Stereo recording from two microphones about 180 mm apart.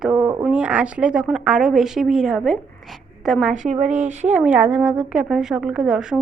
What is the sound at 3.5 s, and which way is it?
Speech, 45° right (ahead or behind).